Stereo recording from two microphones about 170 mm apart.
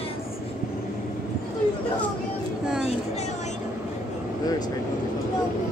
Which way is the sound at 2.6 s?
5° right (ahead or behind).